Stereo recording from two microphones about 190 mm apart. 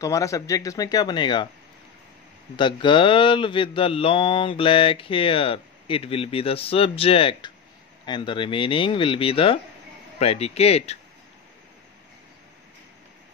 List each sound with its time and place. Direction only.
0.0 s speech: 15° left (ahead or behind)
2.5 s speech: 25° left (ahead or behind)